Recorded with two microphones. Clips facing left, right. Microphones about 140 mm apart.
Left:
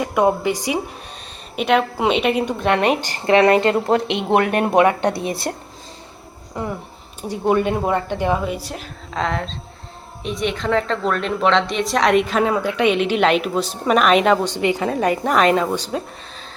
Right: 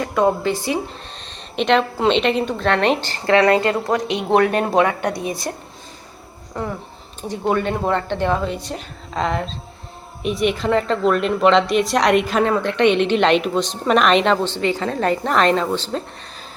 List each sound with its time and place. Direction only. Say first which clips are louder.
0.0 s a woman's voice: even; 15° left (ahead or behind)
6.5 s a woman's voice: even; 10° left (ahead or behind)